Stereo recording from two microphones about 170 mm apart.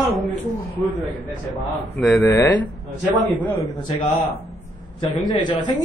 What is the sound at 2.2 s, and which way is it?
Speech, 20° left (ahead or behind).